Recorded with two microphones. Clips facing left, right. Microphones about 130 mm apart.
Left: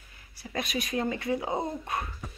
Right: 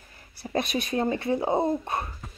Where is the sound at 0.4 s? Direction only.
30° right (ahead or behind).